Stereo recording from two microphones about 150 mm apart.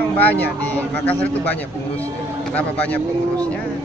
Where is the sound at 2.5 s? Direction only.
10° left (ahead or behind).